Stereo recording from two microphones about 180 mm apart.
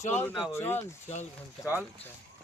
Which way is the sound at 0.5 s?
15° left (ahead or behind).